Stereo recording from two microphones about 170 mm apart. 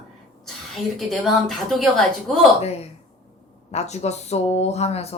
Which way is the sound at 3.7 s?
40° left (ahead or behind).